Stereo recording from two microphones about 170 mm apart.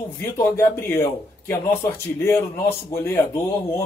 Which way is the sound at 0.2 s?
15° left (ahead or behind).